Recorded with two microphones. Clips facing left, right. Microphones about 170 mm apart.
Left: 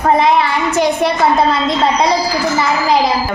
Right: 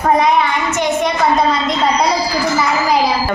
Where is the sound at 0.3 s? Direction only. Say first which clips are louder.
Left 1 dB; 30° left (ahead or behind).